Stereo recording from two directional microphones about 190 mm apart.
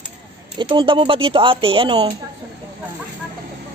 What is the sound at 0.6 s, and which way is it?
Speech, 25° right (ahead or behind).